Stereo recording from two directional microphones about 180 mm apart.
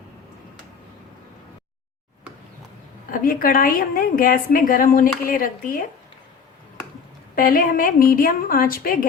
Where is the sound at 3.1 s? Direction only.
50° left (ahead or behind).